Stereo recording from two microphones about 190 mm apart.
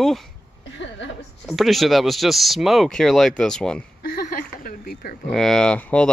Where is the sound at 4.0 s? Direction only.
50° left (ahead or behind).